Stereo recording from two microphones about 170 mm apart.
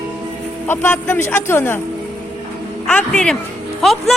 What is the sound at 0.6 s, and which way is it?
Speech, 10° left (ahead or behind).